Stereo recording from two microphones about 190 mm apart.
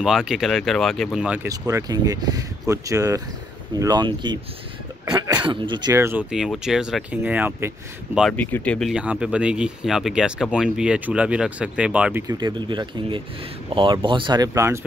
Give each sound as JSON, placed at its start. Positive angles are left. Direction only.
{"t": 0.0, "sound": "speech", "side_deg": 0}
{"t": 1.5, "sound": "speech", "side_deg": -15}
{"t": 6.3, "sound": "speech", "side_deg": 0}
{"t": 8.4, "sound": "speech", "side_deg": 10}